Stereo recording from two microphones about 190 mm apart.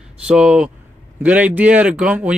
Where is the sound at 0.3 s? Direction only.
5° right (ahead or behind).